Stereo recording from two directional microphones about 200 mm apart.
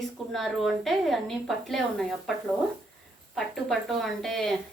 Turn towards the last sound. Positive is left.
turn(degrees=0)  # may be behind; listen again after turning